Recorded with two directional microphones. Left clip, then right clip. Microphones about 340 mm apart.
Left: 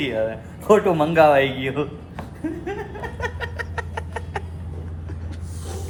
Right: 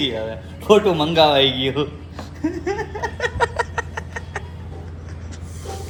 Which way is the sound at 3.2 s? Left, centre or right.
Centre.